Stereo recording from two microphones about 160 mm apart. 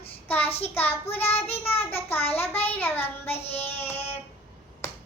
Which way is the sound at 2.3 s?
15° left (ahead or behind).